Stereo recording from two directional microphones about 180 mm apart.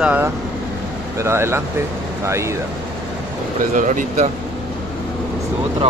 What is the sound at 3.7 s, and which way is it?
Speech, 45° right (ahead or behind).